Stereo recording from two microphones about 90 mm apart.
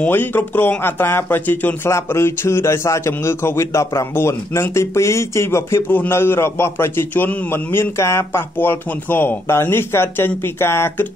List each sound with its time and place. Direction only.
0.0 s a man's voice: 25° left (ahead or behind)